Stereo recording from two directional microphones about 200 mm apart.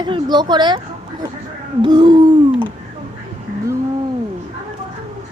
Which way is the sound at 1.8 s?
25° right (ahead or behind).